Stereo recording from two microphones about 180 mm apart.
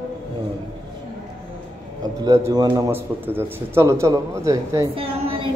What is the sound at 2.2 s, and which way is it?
A man's voice, 20° right (ahead or behind).